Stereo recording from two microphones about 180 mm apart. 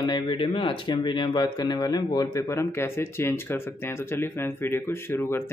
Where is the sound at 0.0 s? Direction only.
25° left (ahead or behind).